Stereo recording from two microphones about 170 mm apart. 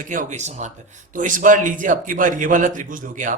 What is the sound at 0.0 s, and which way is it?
A man's voice, 50° right (ahead or behind).